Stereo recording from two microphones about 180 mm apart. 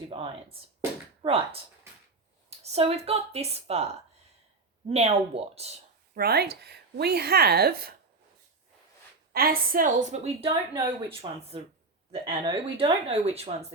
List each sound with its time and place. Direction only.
0.1 s speech: 30° right (ahead or behind)
2.6 s speech: 35° right (ahead or behind)
4.9 s speech: 35° right (ahead or behind)
6.1 s speech: 60° right (ahead or behind)
9.3 s a woman's voice: 55° right (ahead or behind); by 13.7 s 35° right (ahead or behind)